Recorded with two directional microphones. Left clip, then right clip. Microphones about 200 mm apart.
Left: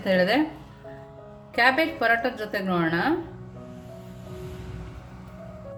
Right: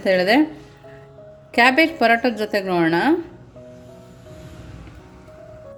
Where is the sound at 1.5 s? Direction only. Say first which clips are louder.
Right 6 dB; 40° right (ahead or behind).